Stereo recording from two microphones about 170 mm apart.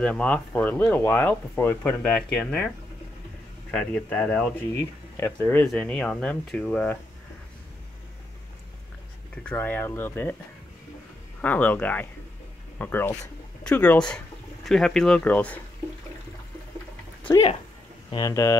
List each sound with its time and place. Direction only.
0.0 s speech: 5° left (ahead or behind)
3.7 s speech: 5° left (ahead or behind)
9.3 s speech: 5° left (ahead or behind)
11.4 s speech: 10° left (ahead or behind)
18.1 s speech: 20° left (ahead or behind)